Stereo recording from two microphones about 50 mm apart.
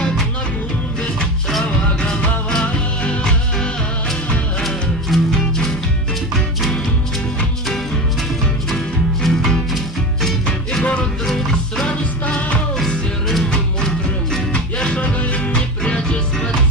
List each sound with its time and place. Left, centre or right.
2.0 s music: centre
5.1 s music: centre
8.6 s music: centre
10.8 s music: left
11.2 s music: centre
14.5 s music: left